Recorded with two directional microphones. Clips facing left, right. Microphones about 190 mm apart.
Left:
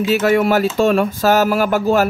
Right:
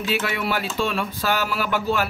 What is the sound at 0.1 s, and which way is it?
Speech, 45° left (ahead or behind).